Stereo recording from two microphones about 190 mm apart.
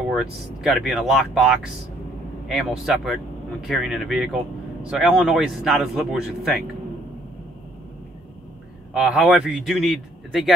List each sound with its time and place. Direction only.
0.1 s speech: centre (ahead or behind)
8.9 s speech: centre (ahead or behind)